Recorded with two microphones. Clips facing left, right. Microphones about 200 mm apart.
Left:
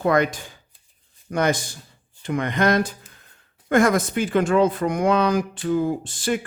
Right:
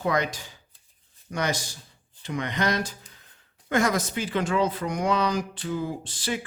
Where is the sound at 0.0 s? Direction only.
55° left (ahead or behind).